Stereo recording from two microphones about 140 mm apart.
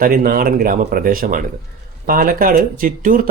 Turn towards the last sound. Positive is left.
turn(degrees=-75)  # may be behind; listen again after turning